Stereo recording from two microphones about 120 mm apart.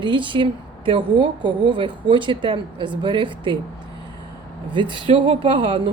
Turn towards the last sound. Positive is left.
turn(degrees=-45)  # may be behind; listen again after turning